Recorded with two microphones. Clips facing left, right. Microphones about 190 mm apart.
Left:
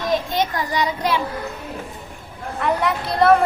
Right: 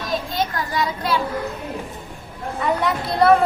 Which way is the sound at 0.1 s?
20° left (ahead or behind).